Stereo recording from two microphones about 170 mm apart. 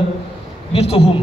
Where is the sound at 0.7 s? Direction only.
35° left (ahead or behind).